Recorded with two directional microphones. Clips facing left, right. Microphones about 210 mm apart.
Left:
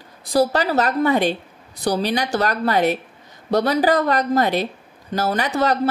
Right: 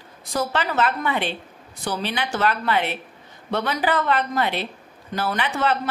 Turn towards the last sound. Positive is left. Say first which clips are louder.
# left 3 dB
turn(degrees=40)  # may be behind; listen again after turning